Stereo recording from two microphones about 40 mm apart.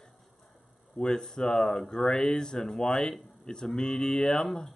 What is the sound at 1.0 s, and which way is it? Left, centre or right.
Speech, centre.